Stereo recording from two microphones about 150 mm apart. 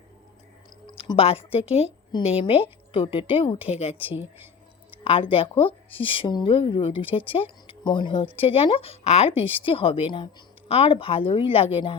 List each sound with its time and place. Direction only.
0.9 s speech: 35° left (ahead or behind)